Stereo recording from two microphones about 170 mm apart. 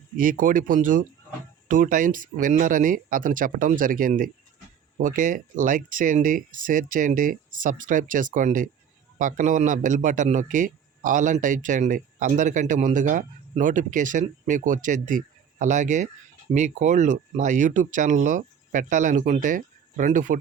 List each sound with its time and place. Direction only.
0.2 s a man's voice: 55° right (ahead or behind)